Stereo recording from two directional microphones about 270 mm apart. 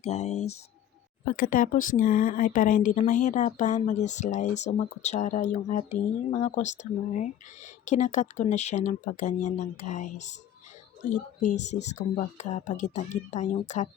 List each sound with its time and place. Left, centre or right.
0.0 s speech: left
11.3 s speech: left